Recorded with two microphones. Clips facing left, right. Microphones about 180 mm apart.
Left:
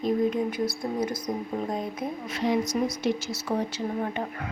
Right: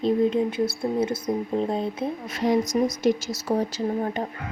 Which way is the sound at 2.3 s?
45° right (ahead or behind).